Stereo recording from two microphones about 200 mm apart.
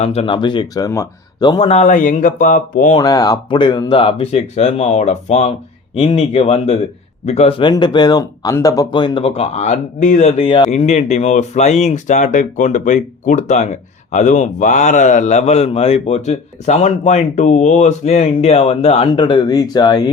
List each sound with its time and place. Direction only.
0.0 s speech: 30° left (ahead or behind)
3.0 s speech: 20° left (ahead or behind)